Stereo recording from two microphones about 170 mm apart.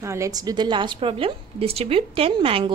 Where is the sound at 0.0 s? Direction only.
15° right (ahead or behind).